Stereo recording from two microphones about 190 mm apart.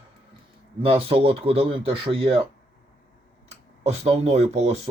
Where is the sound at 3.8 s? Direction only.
35° right (ahead or behind).